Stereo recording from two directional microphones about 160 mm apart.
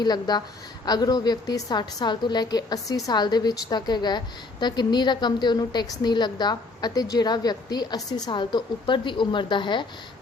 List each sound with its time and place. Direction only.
0.0 s a woman's voice: 25° left (ahead or behind)